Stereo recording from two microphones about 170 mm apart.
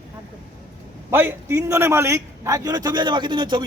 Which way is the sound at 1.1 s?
10° right (ahead or behind).